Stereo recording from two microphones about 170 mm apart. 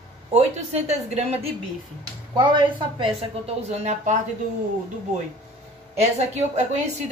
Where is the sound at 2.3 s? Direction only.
25° right (ahead or behind); by 4.2 s 40° right (ahead or behind).